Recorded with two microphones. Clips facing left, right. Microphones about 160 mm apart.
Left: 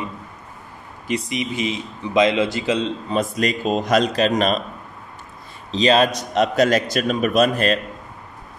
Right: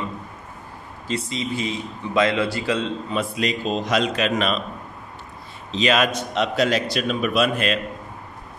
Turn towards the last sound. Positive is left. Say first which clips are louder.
# left 3 dB
turn(degrees=40)  # may be behind; listen again after turning